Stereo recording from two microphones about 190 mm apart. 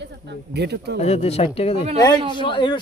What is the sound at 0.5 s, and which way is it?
Speech, 60° right (ahead or behind).